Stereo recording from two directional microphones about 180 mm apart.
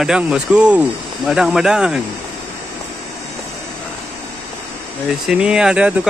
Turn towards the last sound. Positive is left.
turn(degrees=-5)  # may be behind; listen again after turning